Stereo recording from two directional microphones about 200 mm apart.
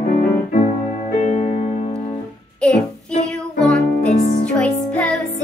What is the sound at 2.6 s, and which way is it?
Child singing, 5° left (ahead or behind).